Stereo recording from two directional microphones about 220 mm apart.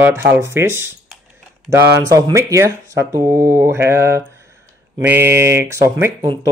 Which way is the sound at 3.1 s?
10° right (ahead or behind).